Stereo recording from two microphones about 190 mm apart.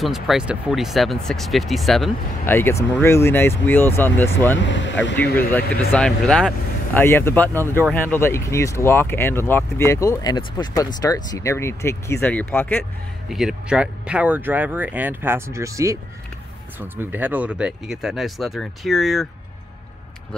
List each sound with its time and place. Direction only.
0.0 s speech: centre (ahead or behind)
2.4 s speech: 10° left (ahead or behind)
4.6 s speech: 75° left (ahead or behind)
5.9 s speech: 5° left (ahead or behind)
13.3 s speech: centre (ahead or behind)